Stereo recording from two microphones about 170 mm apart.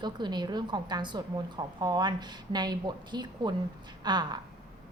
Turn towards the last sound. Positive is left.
turn(degrees=-25)  # may be behind; listen again after turning